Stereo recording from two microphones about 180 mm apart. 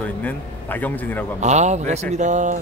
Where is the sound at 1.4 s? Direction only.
40° right (ahead or behind).